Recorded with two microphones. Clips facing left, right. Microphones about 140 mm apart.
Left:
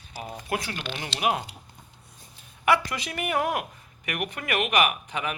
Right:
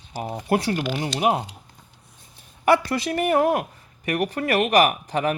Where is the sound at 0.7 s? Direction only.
10° right (ahead or behind).